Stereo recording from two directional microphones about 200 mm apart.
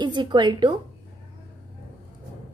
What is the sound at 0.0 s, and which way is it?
Speech, 25° right (ahead or behind).